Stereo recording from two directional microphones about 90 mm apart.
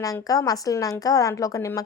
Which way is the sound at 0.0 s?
40° left (ahead or behind).